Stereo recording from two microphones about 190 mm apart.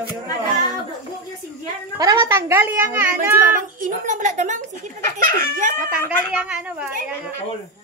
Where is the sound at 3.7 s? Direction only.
45° right (ahead or behind).